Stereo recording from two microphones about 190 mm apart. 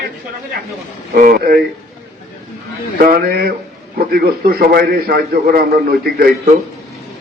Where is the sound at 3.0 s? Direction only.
50° right (ahead or behind).